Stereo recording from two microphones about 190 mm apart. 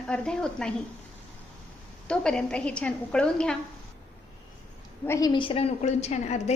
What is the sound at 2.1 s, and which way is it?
A woman's voice, 5° left (ahead or behind).